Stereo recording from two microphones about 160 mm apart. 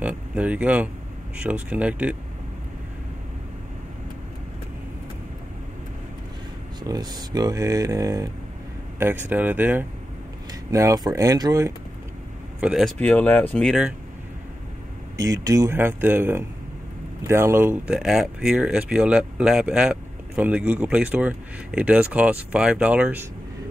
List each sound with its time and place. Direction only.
0.0 s speech: 10° right (ahead or behind)
6.8 s speech: 25° right (ahead or behind)
12.5 s speech: 5° right (ahead or behind)
12.9 s speech: 10° left (ahead or behind)
15.1 s speech: 20° right (ahead or behind)